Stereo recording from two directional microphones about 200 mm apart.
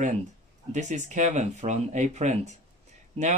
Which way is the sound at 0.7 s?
35° right (ahead or behind).